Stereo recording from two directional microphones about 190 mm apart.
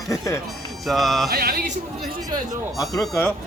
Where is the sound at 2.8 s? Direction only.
Centre (ahead or behind).